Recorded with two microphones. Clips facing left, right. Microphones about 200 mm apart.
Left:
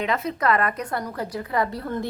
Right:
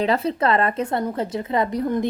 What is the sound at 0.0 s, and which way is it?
A woman's voice, 30° right (ahead or behind).